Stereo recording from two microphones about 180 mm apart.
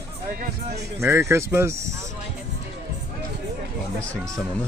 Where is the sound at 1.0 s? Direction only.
15° right (ahead or behind).